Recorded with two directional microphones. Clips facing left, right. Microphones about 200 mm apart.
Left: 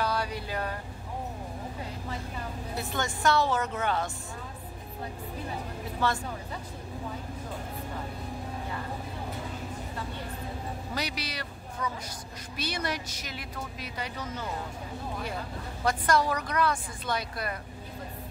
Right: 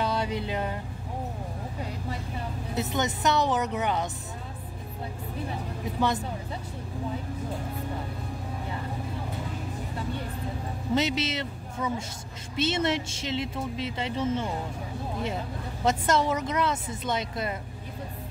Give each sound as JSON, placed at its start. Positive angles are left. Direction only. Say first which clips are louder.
{"t": 0.0, "sound": "a sound", "louder": "right 3 dB", "side_deg": -20}
{"t": 2.7, "sound": "speech", "louder": "right 5 dB", "side_deg": -20}
{"t": 5.9, "sound": "speech", "louder": "right 3 dB", "side_deg": -20}
{"t": 11.0, "sound": "speech", "louder": "right 9 dB", "side_deg": -25}